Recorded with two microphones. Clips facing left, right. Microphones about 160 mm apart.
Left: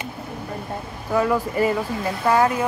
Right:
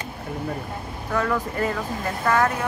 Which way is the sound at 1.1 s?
15° left (ahead or behind).